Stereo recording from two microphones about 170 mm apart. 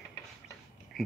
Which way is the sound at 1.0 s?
Centre (ahead or behind).